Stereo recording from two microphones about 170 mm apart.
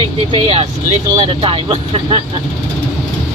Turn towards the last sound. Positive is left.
turn(degrees=-35)  # may be behind; listen again after turning